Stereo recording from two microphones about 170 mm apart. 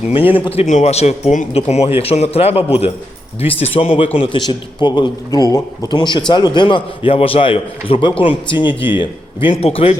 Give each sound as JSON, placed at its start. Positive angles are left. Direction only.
{"t": 0.1, "sound": "a man's voice", "side_deg": 30}